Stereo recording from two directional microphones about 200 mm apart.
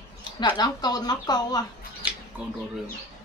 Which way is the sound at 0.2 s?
20° left (ahead or behind).